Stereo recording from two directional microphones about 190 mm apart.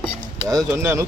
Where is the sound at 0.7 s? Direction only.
15° right (ahead or behind).